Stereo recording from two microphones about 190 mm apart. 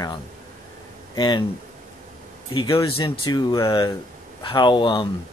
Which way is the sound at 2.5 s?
25° left (ahead or behind).